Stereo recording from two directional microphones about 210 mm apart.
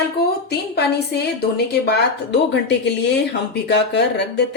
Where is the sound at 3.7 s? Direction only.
55° left (ahead or behind).